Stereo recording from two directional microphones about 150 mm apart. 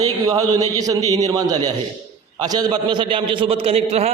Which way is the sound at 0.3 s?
25° right (ahead or behind).